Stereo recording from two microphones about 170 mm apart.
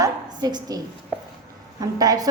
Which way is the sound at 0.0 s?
25° right (ahead or behind).